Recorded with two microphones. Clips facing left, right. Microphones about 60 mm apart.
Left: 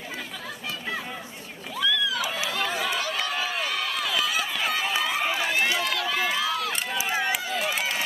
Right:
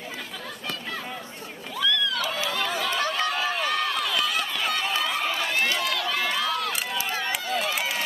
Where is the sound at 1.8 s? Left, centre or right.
Centre.